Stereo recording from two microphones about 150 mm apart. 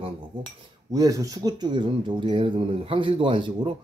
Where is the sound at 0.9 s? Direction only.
20° right (ahead or behind).